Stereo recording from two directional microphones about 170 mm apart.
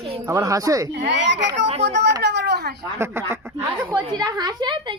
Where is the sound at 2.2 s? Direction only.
80° right.